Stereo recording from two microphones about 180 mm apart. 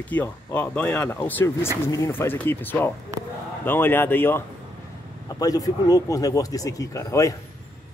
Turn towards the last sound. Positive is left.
turn(degrees=15)  # may be behind; listen again after turning